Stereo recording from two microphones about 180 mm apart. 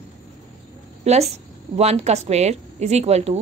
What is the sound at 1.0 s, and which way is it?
A woman's voice, 35° right (ahead or behind).